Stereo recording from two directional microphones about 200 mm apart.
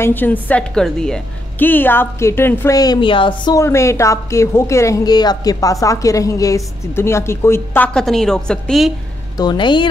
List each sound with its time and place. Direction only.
0.0 s a woman's voice: 10° left (ahead or behind)
9.4 s a woman's voice: 20° left (ahead or behind)